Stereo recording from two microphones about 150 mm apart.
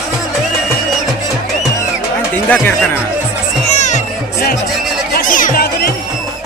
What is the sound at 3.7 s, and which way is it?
Music, 55° left (ahead or behind).